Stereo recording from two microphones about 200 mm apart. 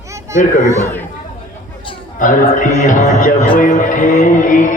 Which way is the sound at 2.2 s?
40° left (ahead or behind).